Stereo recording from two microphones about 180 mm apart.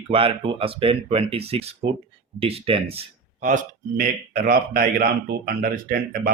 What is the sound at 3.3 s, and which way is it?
A man's voice, 45° right (ahead or behind).